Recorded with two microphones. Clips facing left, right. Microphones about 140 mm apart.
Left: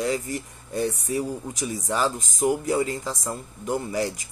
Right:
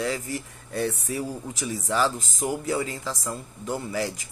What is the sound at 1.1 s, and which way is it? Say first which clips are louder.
Speech: left 3 dB; 35° left (ahead or behind).